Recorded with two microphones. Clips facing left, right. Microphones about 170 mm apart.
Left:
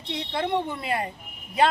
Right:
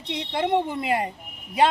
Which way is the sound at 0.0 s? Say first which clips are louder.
Right 2 dB; 20° right (ahead or behind).